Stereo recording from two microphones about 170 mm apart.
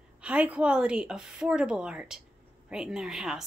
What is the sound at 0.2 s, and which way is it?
Speech, 5° right (ahead or behind).